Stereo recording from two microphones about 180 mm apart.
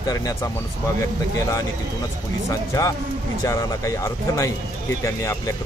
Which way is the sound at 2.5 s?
20° left (ahead or behind).